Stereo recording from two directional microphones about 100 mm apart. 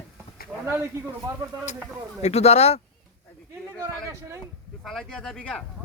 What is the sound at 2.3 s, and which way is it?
Speech, 90° left.